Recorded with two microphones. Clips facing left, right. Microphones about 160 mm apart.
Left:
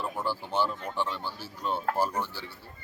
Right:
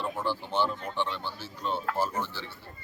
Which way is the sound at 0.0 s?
5° left (ahead or behind).